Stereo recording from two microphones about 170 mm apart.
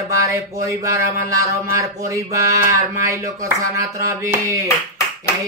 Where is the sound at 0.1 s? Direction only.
20° right (ahead or behind).